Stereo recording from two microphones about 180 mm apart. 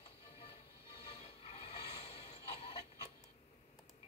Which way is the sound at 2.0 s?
35° left (ahead or behind).